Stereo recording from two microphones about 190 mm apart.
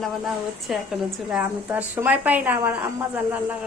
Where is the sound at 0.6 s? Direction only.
Centre (ahead or behind).